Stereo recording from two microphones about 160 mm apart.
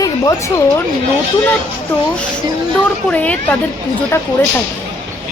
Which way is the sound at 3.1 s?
10° left (ahead or behind).